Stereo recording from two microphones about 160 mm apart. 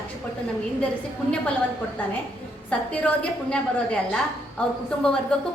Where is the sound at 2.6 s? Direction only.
10° left (ahead or behind).